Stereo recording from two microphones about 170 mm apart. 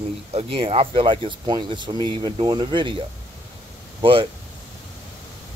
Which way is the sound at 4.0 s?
30° right (ahead or behind).